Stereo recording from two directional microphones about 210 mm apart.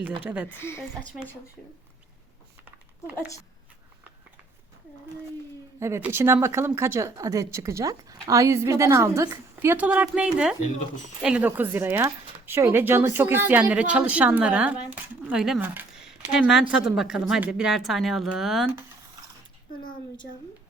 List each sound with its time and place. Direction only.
0.3 s speech: 5° right (ahead or behind)
0.5 s speech: 10° left (ahead or behind)
5.8 s speech: 10° right (ahead or behind)